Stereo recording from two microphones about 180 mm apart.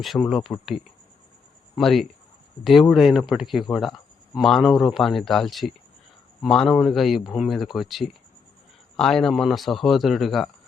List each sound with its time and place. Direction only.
0.0 s speech: centre (ahead or behind)